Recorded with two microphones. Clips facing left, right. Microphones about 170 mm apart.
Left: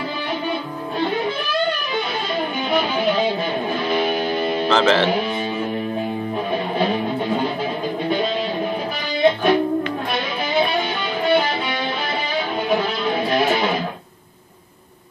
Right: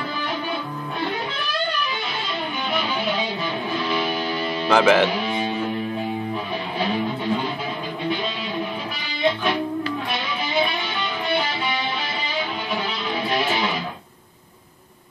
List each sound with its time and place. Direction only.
3.9 s music: 50° left (ahead or behind)
4.6 s speech: 10° right (ahead or behind)
9.2 s music: 45° left (ahead or behind)
12.6 s music: 50° left (ahead or behind)